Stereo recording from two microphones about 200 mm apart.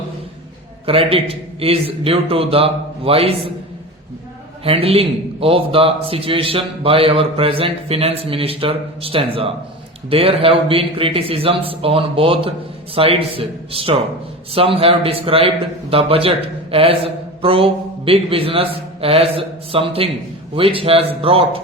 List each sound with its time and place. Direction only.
0.9 s a man's voice: 30° right (ahead or behind)
4.6 s a man's voice: 30° right (ahead or behind)